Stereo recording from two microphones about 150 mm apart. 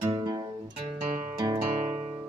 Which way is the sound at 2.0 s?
40° right (ahead or behind).